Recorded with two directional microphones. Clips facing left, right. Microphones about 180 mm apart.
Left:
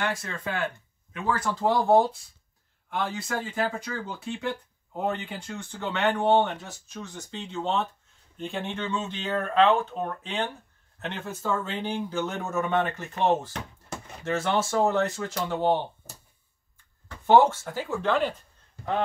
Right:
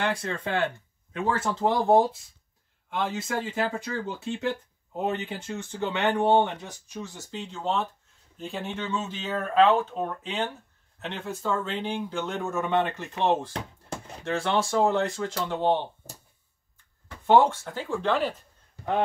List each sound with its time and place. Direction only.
0.0 s speech: 30° right (ahead or behind); by 15.8 s 10° left (ahead or behind)
17.3 s speech: 5° left (ahead or behind)